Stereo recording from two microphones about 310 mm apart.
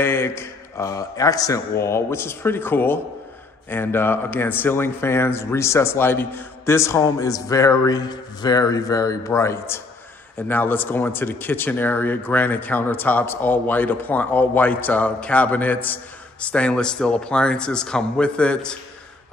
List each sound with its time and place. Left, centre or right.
0.0 s speech: centre